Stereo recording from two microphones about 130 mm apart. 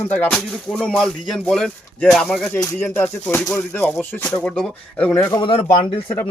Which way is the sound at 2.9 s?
15° left (ahead or behind).